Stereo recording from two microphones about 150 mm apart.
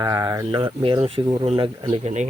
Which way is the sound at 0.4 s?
40° right (ahead or behind).